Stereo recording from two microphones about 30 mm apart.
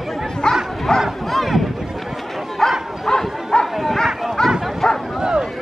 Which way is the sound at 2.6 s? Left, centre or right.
Centre.